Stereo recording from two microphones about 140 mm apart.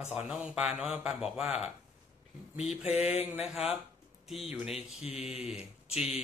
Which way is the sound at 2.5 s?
50° left (ahead or behind).